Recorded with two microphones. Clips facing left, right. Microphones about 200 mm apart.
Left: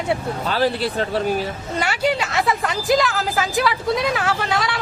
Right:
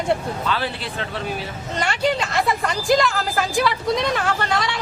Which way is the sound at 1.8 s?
5° left (ahead or behind).